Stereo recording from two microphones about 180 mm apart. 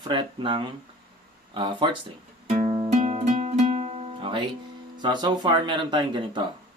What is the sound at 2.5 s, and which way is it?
Music, 35° right (ahead or behind).